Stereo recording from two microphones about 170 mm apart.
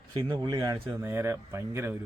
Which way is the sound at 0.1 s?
25° right (ahead or behind).